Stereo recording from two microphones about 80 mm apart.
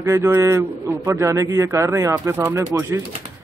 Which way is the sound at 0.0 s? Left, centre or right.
Right.